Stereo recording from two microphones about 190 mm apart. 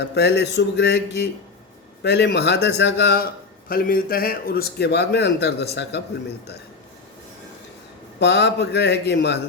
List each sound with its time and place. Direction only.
0.0 s a man's voice: 60° left (ahead or behind)
3.7 s a man's voice: 50° left (ahead or behind)
8.2 s a man's voice: 65° left (ahead or behind)